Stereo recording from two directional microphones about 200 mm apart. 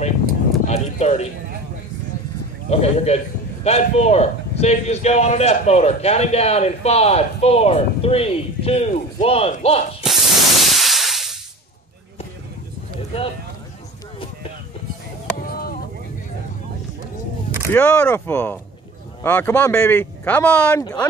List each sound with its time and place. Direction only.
0.7 s sheep: 35° left (ahead or behind)
2.7 s a man's voice: 30° left (ahead or behind)
10.0 s spray: centre (ahead or behind)
17.6 s speech: 10° left (ahead or behind)